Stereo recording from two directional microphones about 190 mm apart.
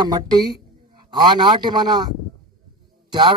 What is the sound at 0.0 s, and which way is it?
A man's voice, 20° right (ahead or behind).